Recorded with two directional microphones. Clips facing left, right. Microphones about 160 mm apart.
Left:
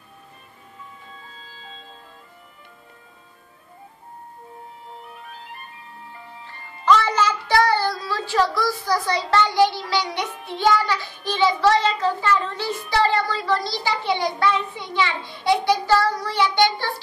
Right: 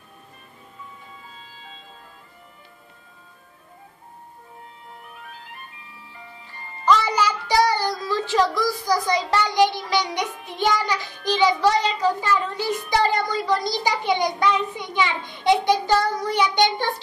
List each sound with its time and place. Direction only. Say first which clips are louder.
7.0 s a child's voice: left 1 dB; 10° right (ahead or behind)